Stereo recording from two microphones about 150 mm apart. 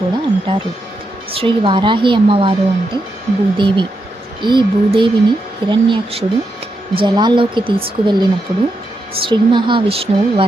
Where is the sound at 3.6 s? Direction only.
30° right (ahead or behind).